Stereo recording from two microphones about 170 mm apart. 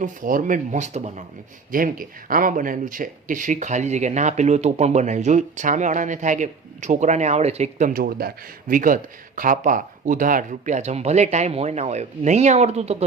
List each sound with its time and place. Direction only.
0.0 s speech: 50° right (ahead or behind)
1.7 s speech: 55° right (ahead or behind); by 13.1 s 40° right (ahead or behind)